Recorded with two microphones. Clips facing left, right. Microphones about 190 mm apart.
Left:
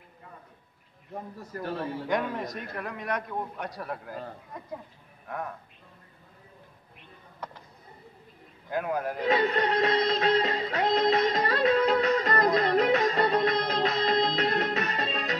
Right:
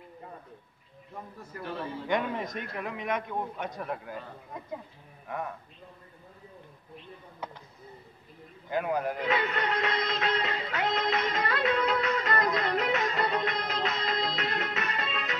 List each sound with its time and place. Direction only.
2.0 s a man's voice: centre (ahead or behind)
8.6 s a man's voice: centre (ahead or behind)
9.2 s music: 35° left (ahead or behind)